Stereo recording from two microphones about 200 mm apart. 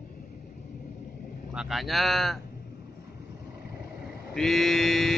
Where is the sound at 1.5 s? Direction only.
Centre (ahead or behind).